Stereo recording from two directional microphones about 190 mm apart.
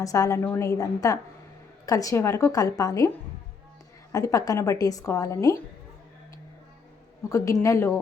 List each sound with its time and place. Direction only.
0.0 s a woman's voice: 15° left (ahead or behind)
4.1 s a woman's voice: 15° left (ahead or behind)
7.3 s a woman's voice: 15° left (ahead or behind)